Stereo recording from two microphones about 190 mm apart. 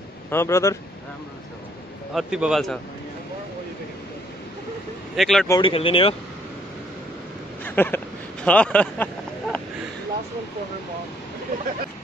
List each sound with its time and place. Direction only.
0.3 s speech: 15° left (ahead or behind)
2.1 s a man's voice: centre (ahead or behind)
5.1 s a man's voice: centre (ahead or behind)
5.5 s speech: 25° left (ahead or behind)
7.6 s speech: 10° left (ahead or behind)